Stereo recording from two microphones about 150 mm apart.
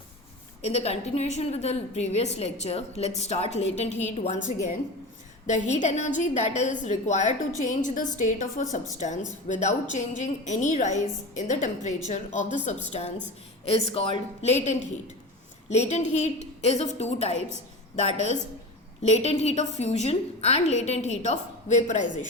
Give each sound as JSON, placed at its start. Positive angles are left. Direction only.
{"t": 0.6, "sound": "a woman's voice", "side_deg": 45}
{"t": 5.5, "sound": "a woman's voice", "side_deg": 50}